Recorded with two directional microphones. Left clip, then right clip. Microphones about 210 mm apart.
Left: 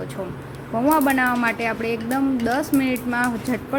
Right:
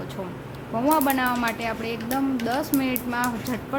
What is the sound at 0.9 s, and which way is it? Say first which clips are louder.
Speech: left 3 dB; 10° left (ahead or behind).